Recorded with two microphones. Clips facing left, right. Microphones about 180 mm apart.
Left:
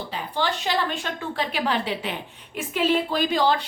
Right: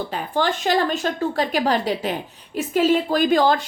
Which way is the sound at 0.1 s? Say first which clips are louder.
Right 2 dB; 50° right (ahead or behind).